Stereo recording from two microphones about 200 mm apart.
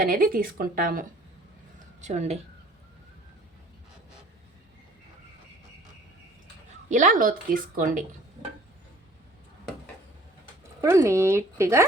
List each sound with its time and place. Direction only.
0.0 s a woman's voice: 45° right (ahead or behind)
6.8 s a woman's voice: 40° right (ahead or behind)
10.8 s speech: 15° right (ahead or behind)